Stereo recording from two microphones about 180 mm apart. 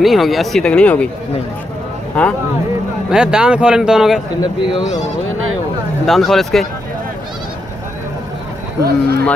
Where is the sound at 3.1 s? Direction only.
5° right (ahead or behind).